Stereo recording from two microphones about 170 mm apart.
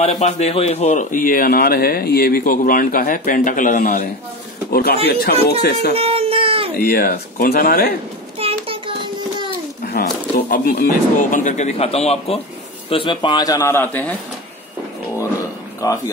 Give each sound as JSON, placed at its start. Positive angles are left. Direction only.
{"t": 0.0, "sound": "speech", "side_deg": 40}
{"t": 5.0, "sound": "speech", "side_deg": 65}
{"t": 5.9, "sound": "baby cry", "side_deg": -35}
{"t": 6.8, "sound": "speech", "side_deg": 60}
{"t": 8.4, "sound": "a sound", "side_deg": -35}
{"t": 9.8, "sound": "a man's voice", "side_deg": 60}
{"t": 15.8, "sound": "a man's voice", "side_deg": 20}